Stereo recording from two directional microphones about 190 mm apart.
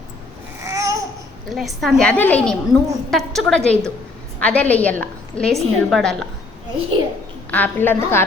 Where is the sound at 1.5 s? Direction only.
Centre (ahead or behind).